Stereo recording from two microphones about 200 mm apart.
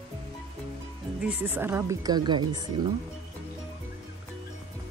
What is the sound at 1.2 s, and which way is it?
Speech, 10° right (ahead or behind).